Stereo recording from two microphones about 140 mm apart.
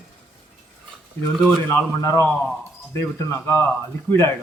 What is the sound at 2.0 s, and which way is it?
Speech, 20° left (ahead or behind).